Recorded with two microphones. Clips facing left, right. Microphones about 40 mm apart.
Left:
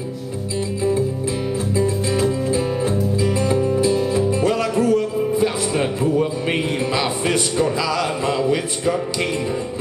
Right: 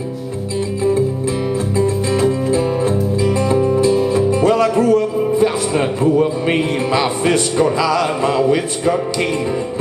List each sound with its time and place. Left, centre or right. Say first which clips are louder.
2.1 s music: right 5 dB; centre